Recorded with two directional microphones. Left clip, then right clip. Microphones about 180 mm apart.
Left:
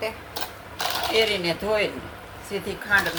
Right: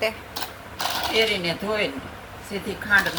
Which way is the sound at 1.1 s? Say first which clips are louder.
Even; 55° left (ahead or behind).